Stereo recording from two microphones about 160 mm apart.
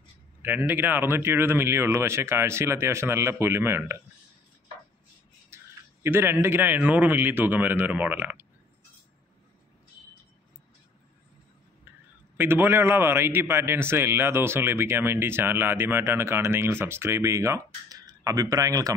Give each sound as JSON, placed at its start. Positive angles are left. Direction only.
{"t": 0.4, "sound": "a man's voice", "side_deg": -10}
{"t": 5.5, "sound": "a sound", "side_deg": -15}
{"t": 6.0, "sound": "a man's voice", "side_deg": -15}
{"t": 12.4, "sound": "a man's voice", "side_deg": -15}